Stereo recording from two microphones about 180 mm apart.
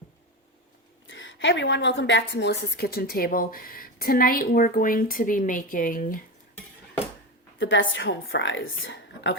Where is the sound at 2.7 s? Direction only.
60° left (ahead or behind).